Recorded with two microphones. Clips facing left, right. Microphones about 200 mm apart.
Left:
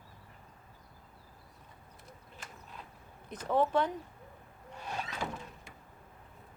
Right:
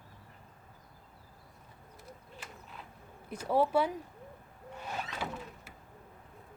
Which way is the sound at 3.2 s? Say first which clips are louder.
Right 1 dB; 10° right (ahead or behind).